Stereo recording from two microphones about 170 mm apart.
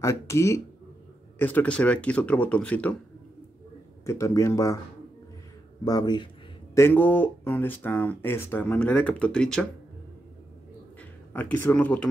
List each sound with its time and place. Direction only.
0.0 s speech: 20° left (ahead or behind)
4.0 s speech: 20° left (ahead or behind)
5.9 s speech: 25° left (ahead or behind)
6.7 s speech: 15° left (ahead or behind)
11.0 s speech: 10° left (ahead or behind)